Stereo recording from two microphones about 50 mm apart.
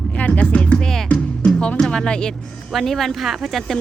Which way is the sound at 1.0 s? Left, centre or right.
Left.